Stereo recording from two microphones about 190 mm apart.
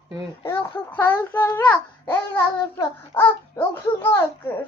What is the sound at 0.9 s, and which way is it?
Child singing, 10° left (ahead or behind).